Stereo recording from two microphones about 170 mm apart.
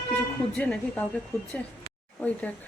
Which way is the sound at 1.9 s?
40° right (ahead or behind).